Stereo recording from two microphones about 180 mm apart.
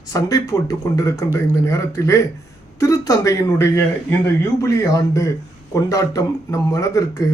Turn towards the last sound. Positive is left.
turn(degrees=15)  # may be behind; listen again after turning